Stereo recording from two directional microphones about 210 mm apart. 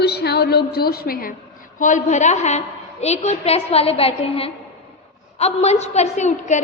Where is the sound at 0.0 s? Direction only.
50° left (ahead or behind).